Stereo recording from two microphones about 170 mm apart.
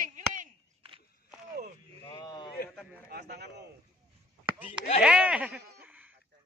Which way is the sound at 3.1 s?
75° right (ahead or behind).